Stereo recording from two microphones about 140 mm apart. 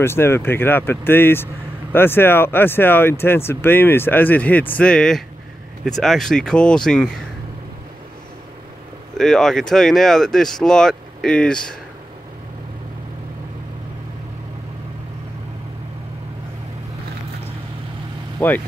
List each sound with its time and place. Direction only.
0.0 s speech: 15° left (ahead or behind)
9.1 s speech: 5° left (ahead or behind)
18.4 s speech: 15° left (ahead or behind)